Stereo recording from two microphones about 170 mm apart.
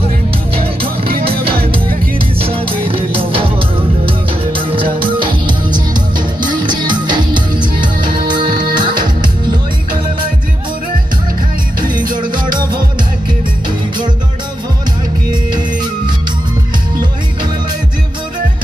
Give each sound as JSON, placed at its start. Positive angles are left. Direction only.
{"t": 2.4, "sound": "music", "side_deg": -35}
{"t": 7.8, "sound": "music", "side_deg": -55}
{"t": 8.7, "sound": "music", "side_deg": -25}
{"t": 11.8, "sound": "music", "side_deg": -55}